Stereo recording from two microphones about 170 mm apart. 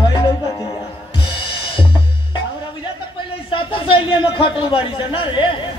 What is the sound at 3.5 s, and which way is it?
A man's voice, 30° left (ahead or behind).